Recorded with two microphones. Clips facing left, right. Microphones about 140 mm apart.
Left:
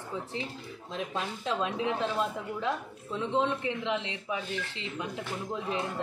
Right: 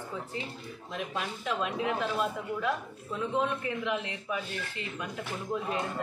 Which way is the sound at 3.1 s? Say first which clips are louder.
Left 1 dB; 25° left (ahead or behind).